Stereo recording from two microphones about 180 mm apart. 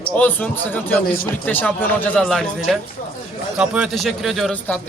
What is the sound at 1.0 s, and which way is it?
Speech, 55° left (ahead or behind).